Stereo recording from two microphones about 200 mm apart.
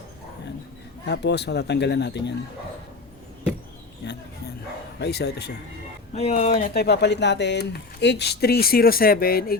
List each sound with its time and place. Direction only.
1.0 s speech: 55° left (ahead or behind)
4.0 s speech: 55° left (ahead or behind)
6.1 s speech: 35° left (ahead or behind)
6.7 s speech: 55° left (ahead or behind)